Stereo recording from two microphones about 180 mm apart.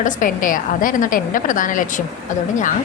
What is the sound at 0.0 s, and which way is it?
A woman's voice, 45° left (ahead or behind).